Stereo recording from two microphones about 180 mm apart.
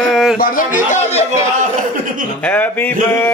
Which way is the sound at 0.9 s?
35° left (ahead or behind).